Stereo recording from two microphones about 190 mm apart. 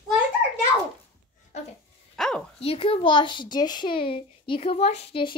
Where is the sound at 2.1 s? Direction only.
5° left (ahead or behind).